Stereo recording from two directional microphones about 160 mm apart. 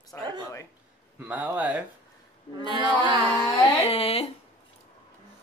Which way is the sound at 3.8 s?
35° left (ahead or behind).